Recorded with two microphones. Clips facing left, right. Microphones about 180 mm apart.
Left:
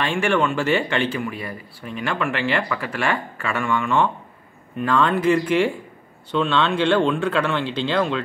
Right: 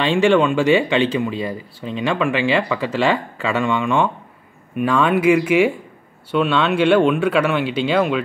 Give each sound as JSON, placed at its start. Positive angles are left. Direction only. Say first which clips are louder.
{"t": 0.0, "sound": "speech", "louder": "right 6 dB", "side_deg": -20}